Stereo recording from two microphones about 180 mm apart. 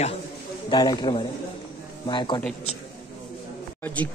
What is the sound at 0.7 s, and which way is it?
A man's voice, 25° left (ahead or behind).